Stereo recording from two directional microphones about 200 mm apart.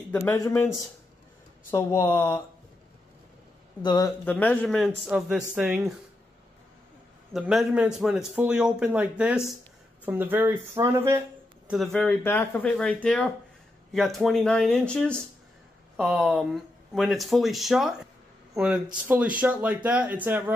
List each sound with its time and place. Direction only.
0.1 s speech: 15° left (ahead or behind)
1.7 s speech: 15° left (ahead or behind)
3.8 s speech: 20° left (ahead or behind)
4.2 s a man's voice: 10° left (ahead or behind)
7.3 s a man's voice: 5° right (ahead or behind)
11.9 s a man's voice: 5° left (ahead or behind); by 20.5 s 10° right (ahead or behind)